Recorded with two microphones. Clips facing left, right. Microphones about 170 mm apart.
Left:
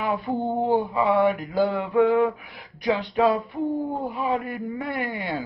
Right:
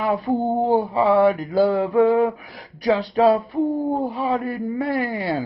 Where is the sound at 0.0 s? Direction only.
35° right (ahead or behind).